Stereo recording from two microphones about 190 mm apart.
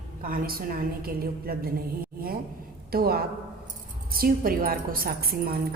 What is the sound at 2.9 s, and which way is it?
A woman's voice, 55° right (ahead or behind).